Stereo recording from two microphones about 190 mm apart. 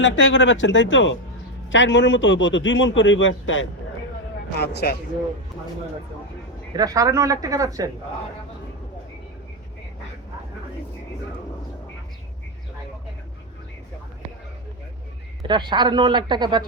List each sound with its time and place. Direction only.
0.0 s a man's voice: 75° left (ahead or behind)
4.5 s speech: 60° left (ahead or behind)
6.7 s speech: 20° right (ahead or behind)
15.4 s speech: 25° right (ahead or behind)